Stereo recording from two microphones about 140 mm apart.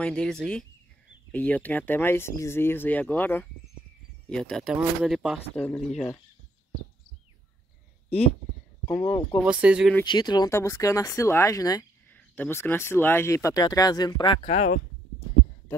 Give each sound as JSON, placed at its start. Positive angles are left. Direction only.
{"t": 0.0, "sound": "speech", "side_deg": 5}
{"t": 8.8, "sound": "speech", "side_deg": 15}
{"t": 9.4, "sound": "speech", "side_deg": -10}
{"t": 10.0, "sound": "speech", "side_deg": 30}
{"t": 10.5, "sound": "speech", "side_deg": 20}
{"t": 12.1, "sound": "speech", "side_deg": 10}